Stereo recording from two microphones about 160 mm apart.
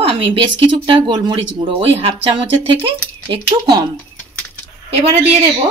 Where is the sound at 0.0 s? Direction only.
35° right (ahead or behind).